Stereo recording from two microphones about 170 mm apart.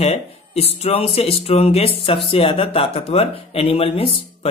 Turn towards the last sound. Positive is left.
turn(degrees=30)  # may be behind; listen again after turning